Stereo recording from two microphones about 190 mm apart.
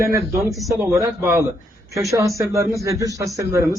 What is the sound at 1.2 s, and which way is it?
A man's voice, 15° right (ahead or behind).